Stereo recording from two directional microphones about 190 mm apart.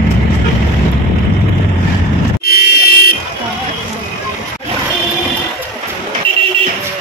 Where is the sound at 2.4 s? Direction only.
55° left (ahead or behind).